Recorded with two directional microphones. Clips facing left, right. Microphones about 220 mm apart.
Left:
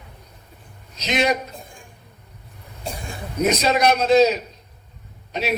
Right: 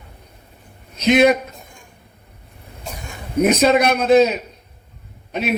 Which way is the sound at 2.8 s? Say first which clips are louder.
Left 2 dB; 30° left (ahead or behind).